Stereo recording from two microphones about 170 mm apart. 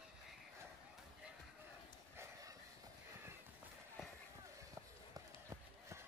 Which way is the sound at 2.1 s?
20° right (ahead or behind).